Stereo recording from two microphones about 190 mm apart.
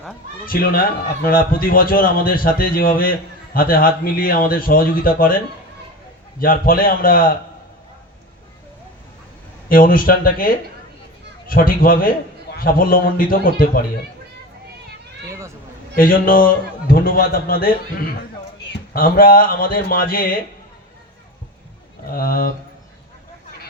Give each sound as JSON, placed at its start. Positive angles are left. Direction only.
{"t": 0.4, "sound": "a man's voice", "side_deg": 50}
{"t": 6.4, "sound": "a man's voice", "side_deg": 50}
{"t": 9.6, "sound": "a man's voice", "side_deg": 50}
{"t": 16.0, "sound": "a man's voice", "side_deg": 45}
{"t": 22.1, "sound": "a man's voice", "side_deg": 50}